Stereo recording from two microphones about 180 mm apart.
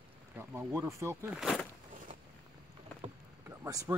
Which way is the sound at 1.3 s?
Centre (ahead or behind).